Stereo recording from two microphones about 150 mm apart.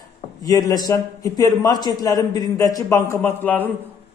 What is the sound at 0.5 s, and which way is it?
A man's voice, 25° left (ahead or behind).